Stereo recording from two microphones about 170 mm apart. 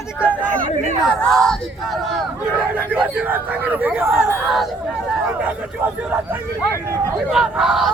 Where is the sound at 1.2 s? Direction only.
5° left (ahead or behind).